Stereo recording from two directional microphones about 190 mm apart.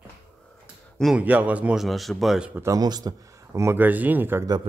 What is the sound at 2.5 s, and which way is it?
Speech, 15° right (ahead or behind).